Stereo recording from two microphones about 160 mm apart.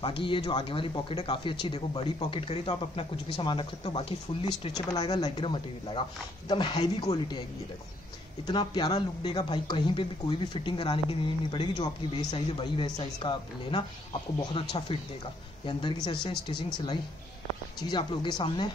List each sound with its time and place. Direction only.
0.0 s speech: 30° left (ahead or behind)
4.7 s speech: 25° left (ahead or behind)
8.5 s speech: 25° left (ahead or behind)